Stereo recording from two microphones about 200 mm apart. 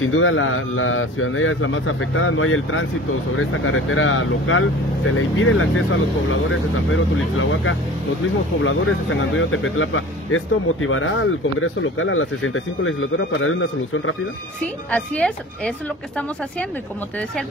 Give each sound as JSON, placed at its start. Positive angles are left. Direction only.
{"t": 0.0, "sound": "speech", "side_deg": 90}
{"t": 6.9, "sound": "speech", "side_deg": 85}
{"t": 14.9, "sound": "speech", "side_deg": 5}